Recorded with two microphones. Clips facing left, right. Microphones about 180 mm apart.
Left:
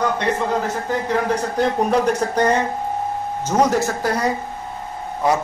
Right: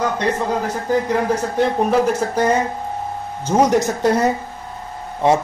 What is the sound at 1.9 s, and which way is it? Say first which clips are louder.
Speech: right 1 dB; 5° right (ahead or behind).